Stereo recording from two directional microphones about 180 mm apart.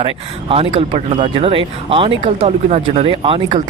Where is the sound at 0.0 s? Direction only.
30° right (ahead or behind).